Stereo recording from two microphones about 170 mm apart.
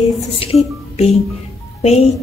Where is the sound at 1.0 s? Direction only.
40° left (ahead or behind).